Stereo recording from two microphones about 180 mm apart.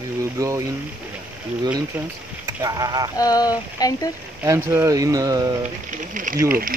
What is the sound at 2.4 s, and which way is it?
Speech, 20° right (ahead or behind).